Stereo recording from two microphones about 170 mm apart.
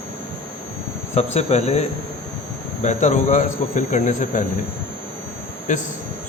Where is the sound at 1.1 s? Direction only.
40° left (ahead or behind).